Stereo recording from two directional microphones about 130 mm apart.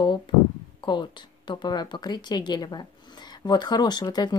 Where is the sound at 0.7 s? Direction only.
35° left (ahead or behind).